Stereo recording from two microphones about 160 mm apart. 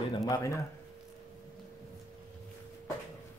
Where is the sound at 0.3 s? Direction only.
20° left (ahead or behind).